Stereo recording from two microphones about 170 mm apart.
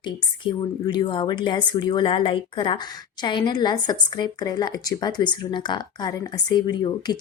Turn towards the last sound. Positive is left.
turn(degrees=25)  # may be behind; listen again after turning